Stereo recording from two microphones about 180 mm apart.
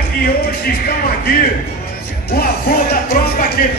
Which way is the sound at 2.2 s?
60° left (ahead or behind).